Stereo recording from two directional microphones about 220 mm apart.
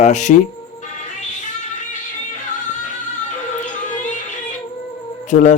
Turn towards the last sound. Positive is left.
turn(degrees=35)  # may be behind; listen again after turning